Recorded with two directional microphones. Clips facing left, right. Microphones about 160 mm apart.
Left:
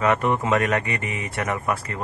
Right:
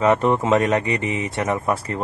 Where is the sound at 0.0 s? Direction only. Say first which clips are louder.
Right 4 dB; 30° right (ahead or behind).